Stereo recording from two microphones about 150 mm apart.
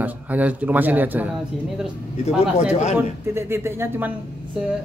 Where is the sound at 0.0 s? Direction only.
10° right (ahead or behind).